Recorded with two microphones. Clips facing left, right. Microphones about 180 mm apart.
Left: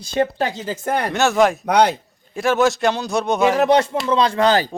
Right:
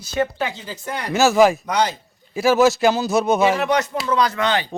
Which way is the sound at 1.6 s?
60° left (ahead or behind).